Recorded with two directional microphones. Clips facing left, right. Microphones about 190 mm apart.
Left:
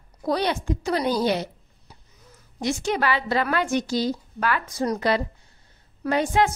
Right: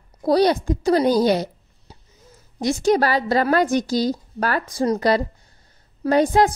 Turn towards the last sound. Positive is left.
turn(degrees=-35)  # may be behind; listen again after turning